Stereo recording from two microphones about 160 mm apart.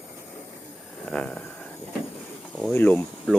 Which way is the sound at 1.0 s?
5° left (ahead or behind).